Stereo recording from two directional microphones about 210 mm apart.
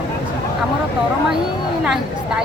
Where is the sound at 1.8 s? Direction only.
5° right (ahead or behind).